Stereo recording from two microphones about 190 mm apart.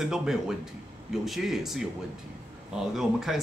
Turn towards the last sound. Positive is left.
turn(degrees=0)  # may be behind; listen again after turning